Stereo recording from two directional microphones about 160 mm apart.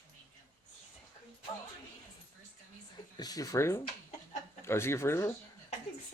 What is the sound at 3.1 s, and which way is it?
Speech, 25° left (ahead or behind).